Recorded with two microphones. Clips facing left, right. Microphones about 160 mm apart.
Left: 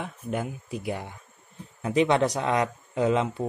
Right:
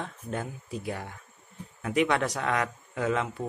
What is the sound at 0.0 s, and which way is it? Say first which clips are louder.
Speech: left 3 dB; 15° left (ahead or behind).